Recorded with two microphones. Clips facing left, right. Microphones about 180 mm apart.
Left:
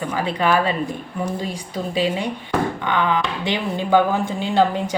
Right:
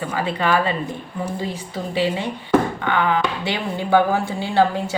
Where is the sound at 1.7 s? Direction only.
15° left (ahead or behind).